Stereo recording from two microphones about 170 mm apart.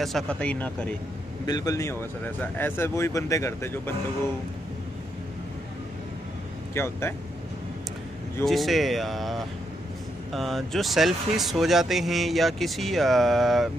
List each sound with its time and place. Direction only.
0.0 s speech: 5° left (ahead or behind)
1.4 s speech: 20° left (ahead or behind)
6.7 s speech: 15° left (ahead or behind)
8.5 s speech: centre (ahead or behind)